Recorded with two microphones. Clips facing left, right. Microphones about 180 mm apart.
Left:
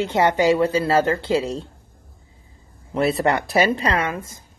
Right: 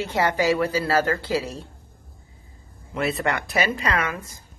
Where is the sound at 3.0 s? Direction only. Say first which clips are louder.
Left 5 dB; 35° left (ahead or behind).